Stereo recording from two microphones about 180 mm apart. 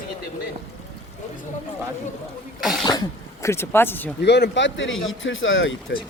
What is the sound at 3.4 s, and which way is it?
Speech, 15° left (ahead or behind).